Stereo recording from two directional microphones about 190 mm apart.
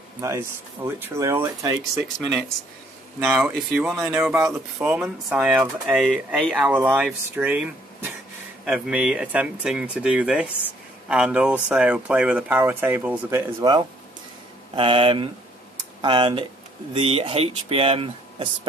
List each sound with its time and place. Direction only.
0.2 s speech: 15° right (ahead or behind)
3.3 s speech: centre (ahead or behind); by 18.7 s 25° right (ahead or behind)